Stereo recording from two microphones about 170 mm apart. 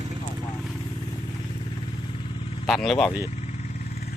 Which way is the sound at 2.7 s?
Centre (ahead or behind).